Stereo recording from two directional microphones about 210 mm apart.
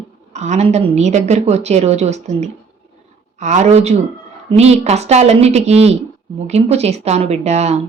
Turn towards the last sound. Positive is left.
turn(degrees=-30)  # may be behind; listen again after turning